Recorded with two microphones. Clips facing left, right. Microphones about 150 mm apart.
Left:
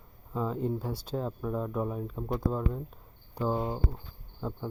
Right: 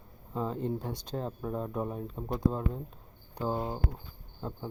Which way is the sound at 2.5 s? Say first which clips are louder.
Left 2 dB; 25° right (ahead or behind).